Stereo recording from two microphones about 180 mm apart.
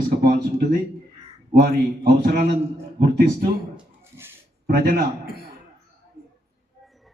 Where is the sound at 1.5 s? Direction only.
55° right (ahead or behind).